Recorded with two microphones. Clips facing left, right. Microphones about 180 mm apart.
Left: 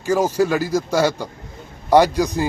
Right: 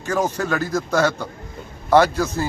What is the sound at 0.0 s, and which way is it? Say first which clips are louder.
A man's voice: left 5 dB; 10° left (ahead or behind).